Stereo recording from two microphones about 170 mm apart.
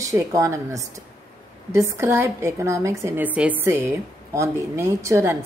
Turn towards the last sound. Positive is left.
turn(degrees=-15)  # may be behind; listen again after turning